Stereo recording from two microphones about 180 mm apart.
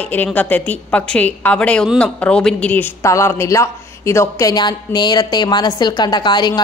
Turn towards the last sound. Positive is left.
turn(degrees=25)  # may be behind; listen again after turning